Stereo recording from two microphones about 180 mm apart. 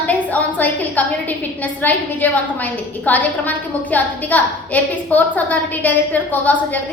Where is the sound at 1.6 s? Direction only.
10° left (ahead or behind).